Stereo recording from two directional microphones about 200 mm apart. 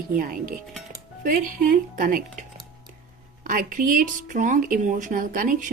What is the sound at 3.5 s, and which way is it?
Speech, 40° right (ahead or behind).